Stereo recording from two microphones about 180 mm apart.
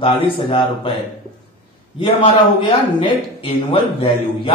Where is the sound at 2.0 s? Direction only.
30° left (ahead or behind).